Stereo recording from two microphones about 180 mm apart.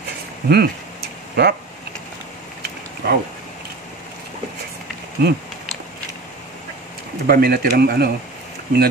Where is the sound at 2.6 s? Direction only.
65° right (ahead or behind).